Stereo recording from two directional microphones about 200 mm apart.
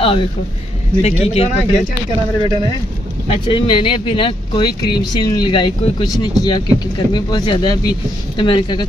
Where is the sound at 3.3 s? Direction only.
25° left (ahead or behind).